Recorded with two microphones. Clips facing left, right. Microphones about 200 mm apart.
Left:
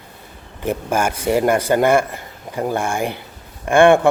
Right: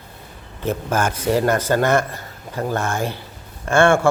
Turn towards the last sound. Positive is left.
turn(degrees=15)  # may be behind; listen again after turning